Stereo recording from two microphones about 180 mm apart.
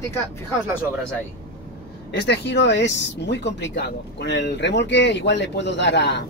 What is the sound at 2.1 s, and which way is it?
Speech, 70° left (ahead or behind).